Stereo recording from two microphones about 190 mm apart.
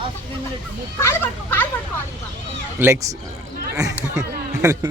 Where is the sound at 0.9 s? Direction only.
10° left (ahead or behind).